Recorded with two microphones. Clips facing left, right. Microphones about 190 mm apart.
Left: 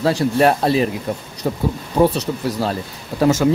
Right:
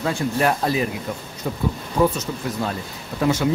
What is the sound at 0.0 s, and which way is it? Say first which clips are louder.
Speech: left 6 dB; 35° left (ahead or behind).